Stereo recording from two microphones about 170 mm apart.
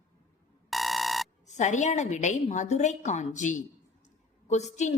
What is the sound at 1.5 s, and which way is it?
A woman's voice, 45° left (ahead or behind).